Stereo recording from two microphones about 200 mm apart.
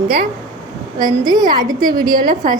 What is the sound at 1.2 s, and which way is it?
A woman's voice, 20° right (ahead or behind).